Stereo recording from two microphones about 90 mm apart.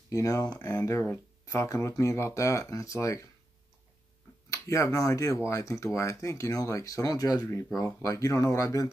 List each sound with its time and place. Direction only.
0.1 s speech: 40° left (ahead or behind)
0.8 s speech: 30° left (ahead or behind)
4.5 s speech: 35° left (ahead or behind)